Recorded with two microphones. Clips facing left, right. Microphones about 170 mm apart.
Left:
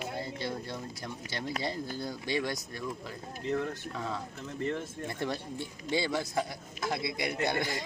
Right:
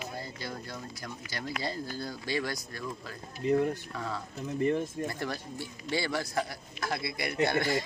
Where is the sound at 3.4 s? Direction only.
15° right (ahead or behind).